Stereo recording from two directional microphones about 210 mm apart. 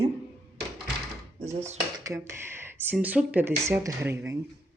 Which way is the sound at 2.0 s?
15° right (ahead or behind).